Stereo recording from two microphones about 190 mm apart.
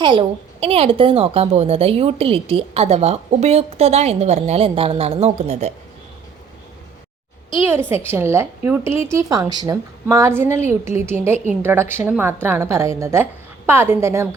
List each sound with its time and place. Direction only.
0.0 s a woman's voice: 25° right (ahead or behind)
7.6 s speech: 15° right (ahead or behind)